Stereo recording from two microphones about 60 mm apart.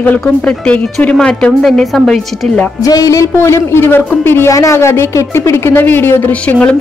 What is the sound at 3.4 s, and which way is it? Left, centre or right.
Speech, left.